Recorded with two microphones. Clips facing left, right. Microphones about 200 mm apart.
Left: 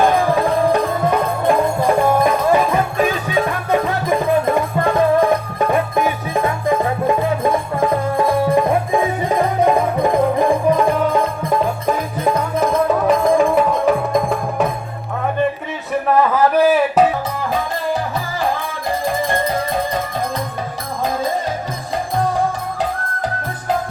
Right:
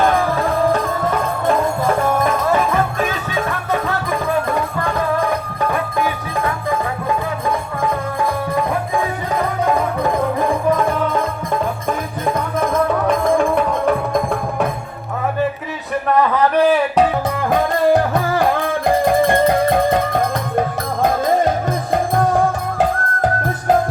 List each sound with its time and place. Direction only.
13.1 s music: 5° left (ahead or behind)
16.0 s a sound: 5° left (ahead or behind)
17.5 s music: 55° right (ahead or behind)